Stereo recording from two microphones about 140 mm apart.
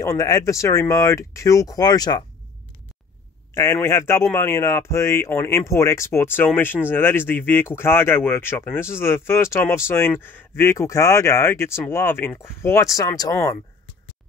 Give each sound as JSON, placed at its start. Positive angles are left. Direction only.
{"t": 0.0, "sound": "speech", "side_deg": 25}
{"t": 3.5, "sound": "speech", "side_deg": 20}